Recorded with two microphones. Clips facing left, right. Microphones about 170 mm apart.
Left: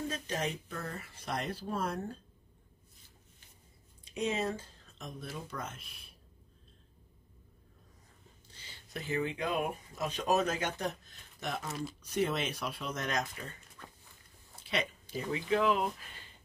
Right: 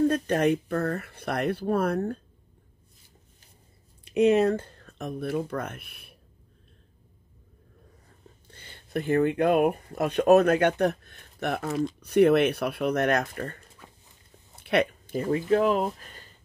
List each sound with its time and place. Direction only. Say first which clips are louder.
0.1 s speech: right 13 dB; 60° right (ahead or behind)
4.0 s speech: right 13 dB; 65° right (ahead or behind)
8.5 s speech: right 3 dB; 55° right (ahead or behind)